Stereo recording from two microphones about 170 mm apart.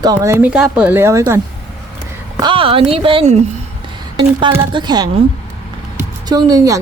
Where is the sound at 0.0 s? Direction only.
20° right (ahead or behind).